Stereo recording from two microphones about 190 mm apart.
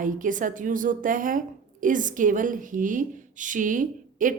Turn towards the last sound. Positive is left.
turn(degrees=-45)  # may be behind; listen again after turning